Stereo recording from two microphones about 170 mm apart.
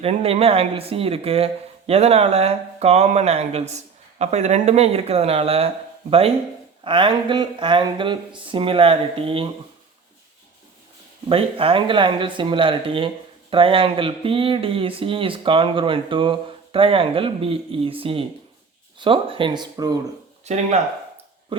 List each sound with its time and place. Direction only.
0.0 s speech: 35° right (ahead or behind)
11.3 s speech: 30° right (ahead or behind)
20.4 s speech: 40° right (ahead or behind)
21.5 s speech: 30° right (ahead or behind)